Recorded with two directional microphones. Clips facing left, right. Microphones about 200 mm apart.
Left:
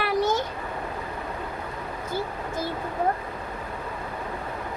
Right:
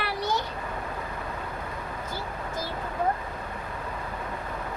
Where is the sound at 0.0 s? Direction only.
50° left (ahead or behind).